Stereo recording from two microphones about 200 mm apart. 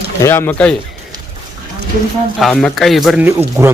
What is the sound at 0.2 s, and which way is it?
Speech, 10° left (ahead or behind).